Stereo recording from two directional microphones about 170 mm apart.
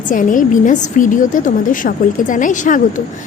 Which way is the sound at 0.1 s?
50° left (ahead or behind).